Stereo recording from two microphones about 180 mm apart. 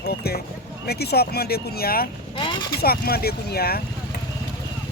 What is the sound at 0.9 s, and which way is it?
Speech, 60° left (ahead or behind).